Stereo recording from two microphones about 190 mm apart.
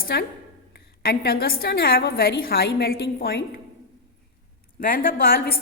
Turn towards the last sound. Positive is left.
turn(degrees=55)  # may be behind; listen again after turning